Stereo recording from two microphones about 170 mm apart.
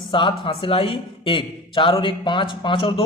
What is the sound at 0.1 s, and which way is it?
A man's voice, 30° left (ahead or behind).